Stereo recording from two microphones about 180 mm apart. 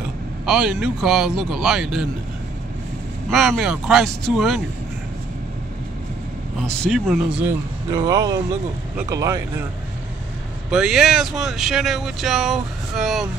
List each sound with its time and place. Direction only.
0.5 s speech: centre (ahead or behind)
3.3 s speech: centre (ahead or behind)
6.6 s speech: 5° left (ahead or behind)
7.4 s speech: 20° right (ahead or behind)
10.7 s speech: 5° right (ahead or behind)